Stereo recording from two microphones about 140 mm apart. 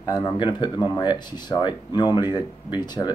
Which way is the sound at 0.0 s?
30° left (ahead or behind).